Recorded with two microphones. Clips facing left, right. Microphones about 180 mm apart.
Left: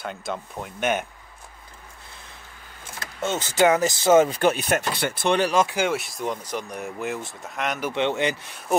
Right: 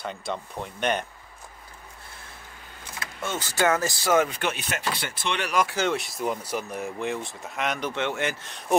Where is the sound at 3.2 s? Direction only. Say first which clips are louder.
Left 5 dB; 20° left (ahead or behind).